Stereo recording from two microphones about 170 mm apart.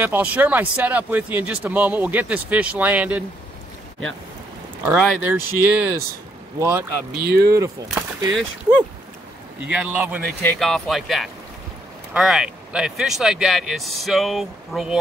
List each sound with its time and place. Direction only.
0.0 s speech: 10° right (ahead or behind)
4.8 s speech: 10° right (ahead or behind)
7.2 s speech: 70° right (ahead or behind)
8.3 s speech: 5° right (ahead or behind)